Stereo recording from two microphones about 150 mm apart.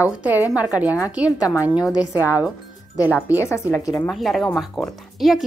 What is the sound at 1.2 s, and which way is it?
A woman's voice, 25° left (ahead or behind).